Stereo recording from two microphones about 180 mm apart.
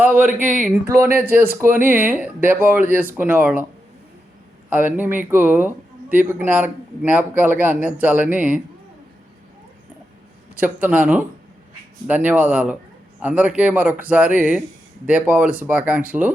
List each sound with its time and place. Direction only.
0.9 s speech: 15° right (ahead or behind)
4.7 s speech: 10° right (ahead or behind)
10.5 s a man's voice: 10° right (ahead or behind)